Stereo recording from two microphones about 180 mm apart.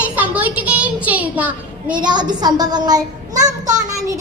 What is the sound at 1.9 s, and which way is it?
A child's voice, 25° right (ahead or behind).